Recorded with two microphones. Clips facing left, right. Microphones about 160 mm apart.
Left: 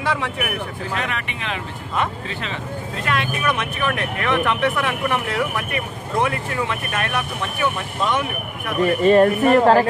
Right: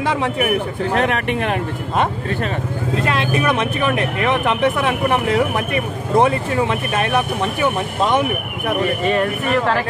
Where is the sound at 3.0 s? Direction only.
30° right (ahead or behind).